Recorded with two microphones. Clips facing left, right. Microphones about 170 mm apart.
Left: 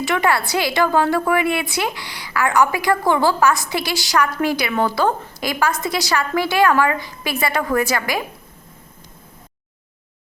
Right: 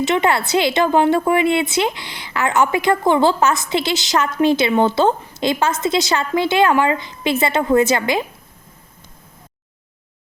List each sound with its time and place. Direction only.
0.0 s a woman's voice: 20° right (ahead or behind)